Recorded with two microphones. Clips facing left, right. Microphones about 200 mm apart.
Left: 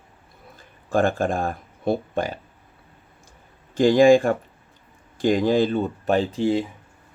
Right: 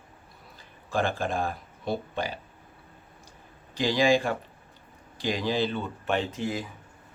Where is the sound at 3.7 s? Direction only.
50° left (ahead or behind); by 6.6 s 30° left (ahead or behind).